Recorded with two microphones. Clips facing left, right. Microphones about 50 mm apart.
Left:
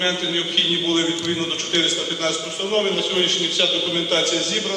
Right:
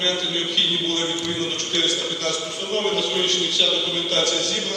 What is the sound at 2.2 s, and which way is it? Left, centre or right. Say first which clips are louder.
A man's voice: left 2 dB; left.